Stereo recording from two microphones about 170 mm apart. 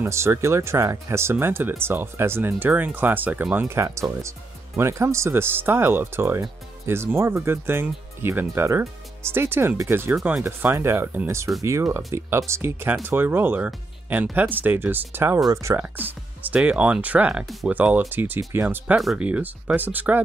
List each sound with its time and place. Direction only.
0.0 s speech: 15° right (ahead or behind)
10.1 s speech: 5° right (ahead or behind)
10.4 s speech: 15° right (ahead or behind)